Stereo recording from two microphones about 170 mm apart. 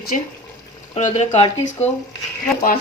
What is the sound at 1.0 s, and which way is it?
Speech, 40° left (ahead or behind).